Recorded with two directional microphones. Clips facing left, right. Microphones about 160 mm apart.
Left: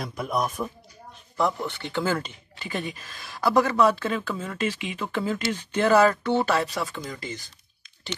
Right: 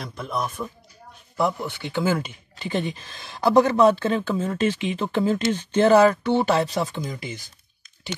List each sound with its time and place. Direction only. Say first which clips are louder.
0.0 s a man's voice: left 2 dB; 10° left (ahead or behind)
1.3 s speech: right 1 dB; 10° right (ahead or behind)
2.6 s speech: right 5 dB; 25° right (ahead or behind)